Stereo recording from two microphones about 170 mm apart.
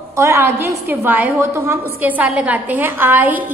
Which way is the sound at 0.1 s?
15° right (ahead or behind).